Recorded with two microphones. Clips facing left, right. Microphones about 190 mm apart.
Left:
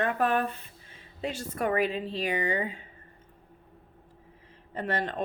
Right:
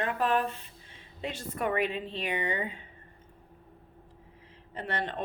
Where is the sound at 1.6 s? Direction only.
35° left (ahead or behind).